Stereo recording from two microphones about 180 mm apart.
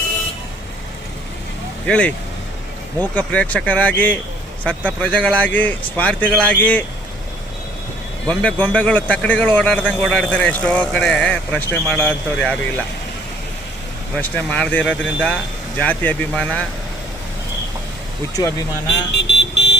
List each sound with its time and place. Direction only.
1.9 s a man's voice: 5° left (ahead or behind)
8.3 s a man's voice: 5° left (ahead or behind)
14.2 s a man's voice: 10° left (ahead or behind)
19.1 s vehicle: 75° left (ahead or behind)